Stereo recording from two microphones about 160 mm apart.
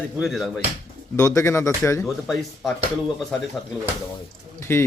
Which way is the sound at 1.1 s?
20° left (ahead or behind).